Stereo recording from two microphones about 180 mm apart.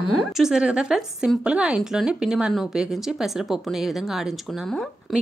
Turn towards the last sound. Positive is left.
turn(degrees=0)  # may be behind; listen again after turning